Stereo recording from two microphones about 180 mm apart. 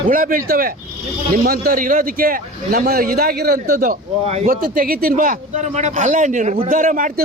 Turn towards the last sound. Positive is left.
turn(degrees=-50)  # may be behind; listen again after turning